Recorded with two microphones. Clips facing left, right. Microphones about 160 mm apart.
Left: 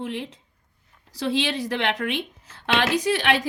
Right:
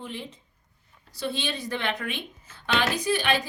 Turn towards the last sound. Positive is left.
turn(degrees=90)